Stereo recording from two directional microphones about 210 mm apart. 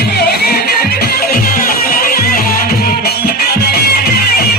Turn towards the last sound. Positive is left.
turn(degrees=45)  # may be behind; listen again after turning